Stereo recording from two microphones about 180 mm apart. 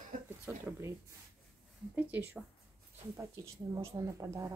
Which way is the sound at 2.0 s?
10° right (ahead or behind).